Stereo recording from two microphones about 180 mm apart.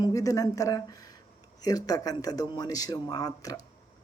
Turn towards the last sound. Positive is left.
turn(degrees=20)  # may be behind; listen again after turning